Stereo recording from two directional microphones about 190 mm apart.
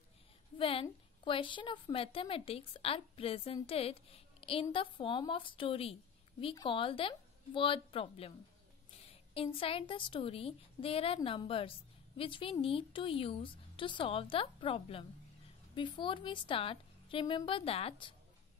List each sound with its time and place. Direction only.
0.6 s a woman's voice: 30° left (ahead or behind)
9.3 s a woman's voice: 30° left (ahead or behind)